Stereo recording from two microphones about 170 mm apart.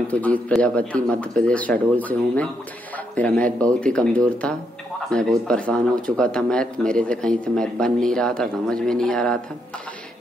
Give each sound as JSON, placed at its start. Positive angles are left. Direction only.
{"t": 0.1, "sound": "speech", "side_deg": 10}